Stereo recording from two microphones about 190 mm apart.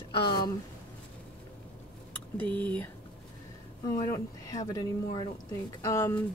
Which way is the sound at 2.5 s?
10° left (ahead or behind).